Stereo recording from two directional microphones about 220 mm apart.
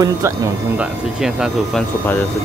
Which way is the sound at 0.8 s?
5° right (ahead or behind).